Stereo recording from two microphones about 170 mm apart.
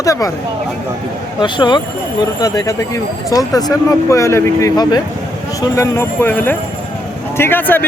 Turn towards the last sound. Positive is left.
turn(degrees=10)  # may be behind; listen again after turning